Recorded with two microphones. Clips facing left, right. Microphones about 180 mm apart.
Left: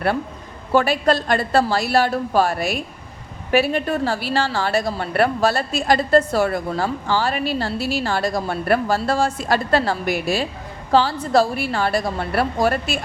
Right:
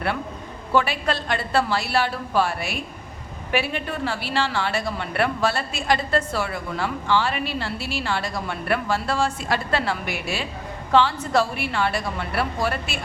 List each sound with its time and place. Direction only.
0.7 s a woman's voice: 40° left (ahead or behind)